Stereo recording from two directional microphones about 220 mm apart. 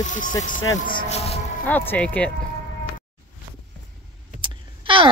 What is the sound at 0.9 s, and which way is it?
Siren, 30° left (ahead or behind).